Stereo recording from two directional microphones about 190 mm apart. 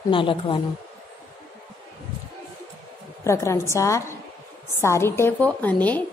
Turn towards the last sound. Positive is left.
turn(degrees=10)  # may be behind; listen again after turning